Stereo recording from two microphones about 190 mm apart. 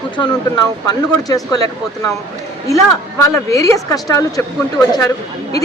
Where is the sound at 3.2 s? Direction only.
15° left (ahead or behind).